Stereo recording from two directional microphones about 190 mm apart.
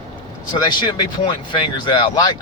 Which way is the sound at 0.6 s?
20° left (ahead or behind).